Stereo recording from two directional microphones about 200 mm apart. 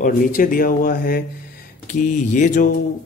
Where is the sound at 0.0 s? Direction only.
45° left (ahead or behind).